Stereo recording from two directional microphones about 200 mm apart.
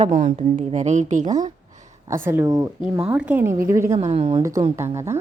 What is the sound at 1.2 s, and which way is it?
A woman's voice, 20° right (ahead or behind).